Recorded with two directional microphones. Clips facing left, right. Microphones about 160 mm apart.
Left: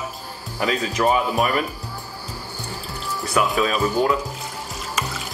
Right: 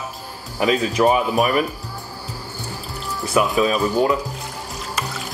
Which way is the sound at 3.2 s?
Centre (ahead or behind).